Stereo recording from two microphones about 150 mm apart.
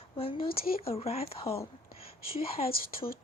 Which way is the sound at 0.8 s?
40° left (ahead or behind).